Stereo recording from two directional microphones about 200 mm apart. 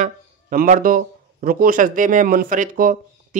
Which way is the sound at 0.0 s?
40° right (ahead or behind).